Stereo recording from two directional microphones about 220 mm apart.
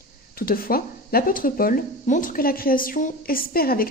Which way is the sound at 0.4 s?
40° left (ahead or behind).